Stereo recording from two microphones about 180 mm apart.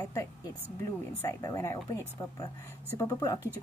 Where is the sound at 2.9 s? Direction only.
15° left (ahead or behind).